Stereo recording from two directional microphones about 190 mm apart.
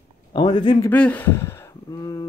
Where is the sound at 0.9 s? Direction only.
10° left (ahead or behind).